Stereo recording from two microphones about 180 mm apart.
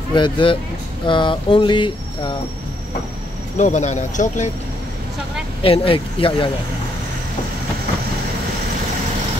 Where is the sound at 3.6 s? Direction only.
40° left (ahead or behind).